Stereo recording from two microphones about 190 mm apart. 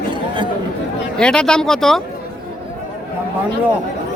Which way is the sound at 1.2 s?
5° left (ahead or behind).